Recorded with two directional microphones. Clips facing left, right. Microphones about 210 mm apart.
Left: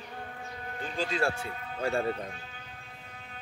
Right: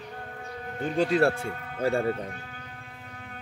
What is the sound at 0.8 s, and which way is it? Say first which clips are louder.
Speech: right 8 dB; 60° right (ahead or behind).